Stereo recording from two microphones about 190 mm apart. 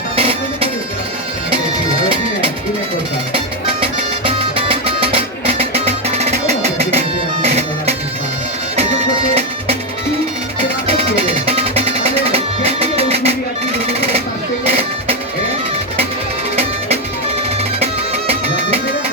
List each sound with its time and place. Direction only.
0.2 s music: 30° right (ahead or behind)
3.3 s music: 30° right (ahead or behind)
10.8 s music: 30° right (ahead or behind)
14.6 s music: 30° right (ahead or behind)
18.3 s music: 30° right (ahead or behind)